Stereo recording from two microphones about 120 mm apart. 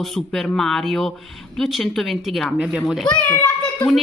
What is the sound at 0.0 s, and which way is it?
Speech, centre (ahead or behind).